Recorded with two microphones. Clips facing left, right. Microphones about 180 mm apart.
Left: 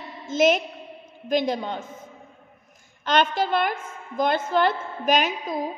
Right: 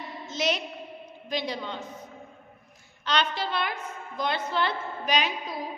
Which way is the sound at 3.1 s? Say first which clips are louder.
Left 6 dB; 50° left (ahead or behind).